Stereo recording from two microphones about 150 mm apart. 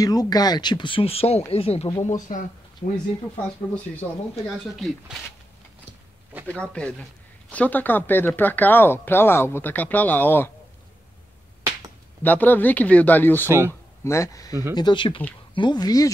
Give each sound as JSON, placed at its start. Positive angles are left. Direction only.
{"t": 0.0, "sound": "speech", "side_deg": 25}
{"t": 2.3, "sound": "speech", "side_deg": 60}
{"t": 3.7, "sound": "speech", "side_deg": 10}
{"t": 4.7, "sound": "speech", "side_deg": 0}
{"t": 6.4, "sound": "speech", "side_deg": 5}
{"t": 12.2, "sound": "speech", "side_deg": 10}
{"t": 13.5, "sound": "speech", "side_deg": -15}
{"t": 14.0, "sound": "speech", "side_deg": 20}
{"t": 14.5, "sound": "speech", "side_deg": -20}
{"t": 14.8, "sound": "speech", "side_deg": 30}